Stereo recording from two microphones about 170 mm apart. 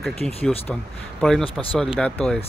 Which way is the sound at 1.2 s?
5° left (ahead or behind).